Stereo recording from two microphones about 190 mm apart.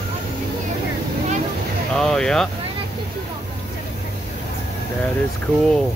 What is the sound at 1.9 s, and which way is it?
Speech, 5° left (ahead or behind).